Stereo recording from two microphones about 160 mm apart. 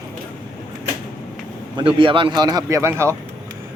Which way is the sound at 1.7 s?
30° right (ahead or behind).